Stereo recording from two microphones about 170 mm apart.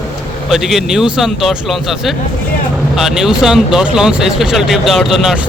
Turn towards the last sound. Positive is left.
turn(degrees=0)  # may be behind; listen again after turning